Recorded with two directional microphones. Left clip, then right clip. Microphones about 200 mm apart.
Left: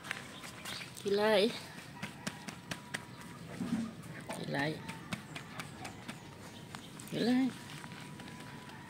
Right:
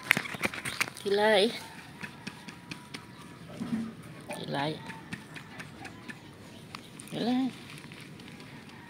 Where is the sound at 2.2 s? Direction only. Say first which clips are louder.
Even; 45° left (ahead or behind).